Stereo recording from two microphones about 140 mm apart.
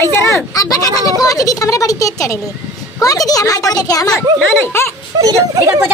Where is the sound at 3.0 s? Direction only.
25° left (ahead or behind).